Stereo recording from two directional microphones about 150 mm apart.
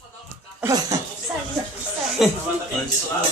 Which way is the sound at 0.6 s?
20° right (ahead or behind).